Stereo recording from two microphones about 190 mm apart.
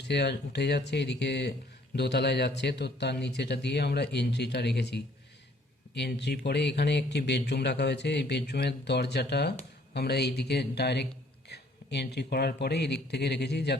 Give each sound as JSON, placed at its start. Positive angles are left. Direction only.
{"t": 0.0, "sound": "speech", "side_deg": 60}